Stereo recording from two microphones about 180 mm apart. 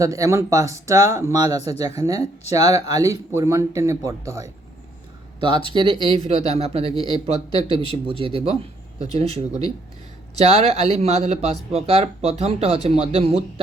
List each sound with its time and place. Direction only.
0.0 s speech: 20° right (ahead or behind)
5.4 s speech: 25° right (ahead or behind)